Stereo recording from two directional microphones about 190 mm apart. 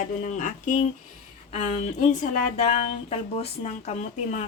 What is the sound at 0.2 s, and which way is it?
Speech, 40° left (ahead or behind).